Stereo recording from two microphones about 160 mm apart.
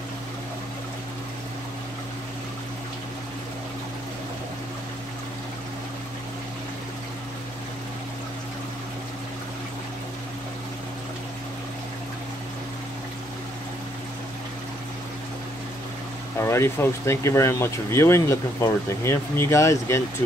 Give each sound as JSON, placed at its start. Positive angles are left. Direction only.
{"t": 16.3, "sound": "speech", "side_deg": 15}